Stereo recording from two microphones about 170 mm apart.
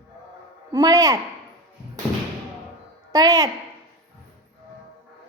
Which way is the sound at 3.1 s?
20° right (ahead or behind).